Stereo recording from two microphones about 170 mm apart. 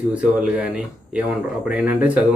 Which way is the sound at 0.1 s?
5° right (ahead or behind).